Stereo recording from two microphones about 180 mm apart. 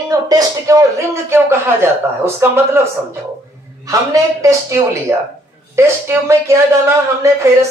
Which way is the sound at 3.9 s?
20° right (ahead or behind).